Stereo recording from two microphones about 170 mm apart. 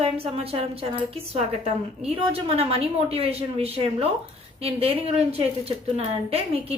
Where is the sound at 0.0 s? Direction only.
40° right (ahead or behind).